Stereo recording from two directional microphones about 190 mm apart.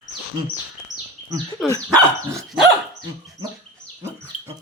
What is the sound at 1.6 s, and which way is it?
Speech, 15° left (ahead or behind).